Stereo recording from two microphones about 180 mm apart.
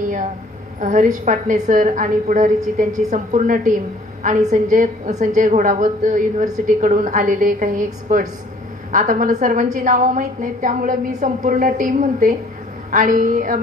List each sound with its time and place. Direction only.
0.7 s a woman's voice: 45° right (ahead or behind)